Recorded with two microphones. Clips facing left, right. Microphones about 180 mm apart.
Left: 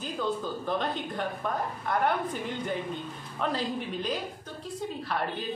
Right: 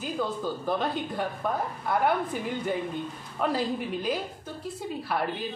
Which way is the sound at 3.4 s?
5° right (ahead or behind).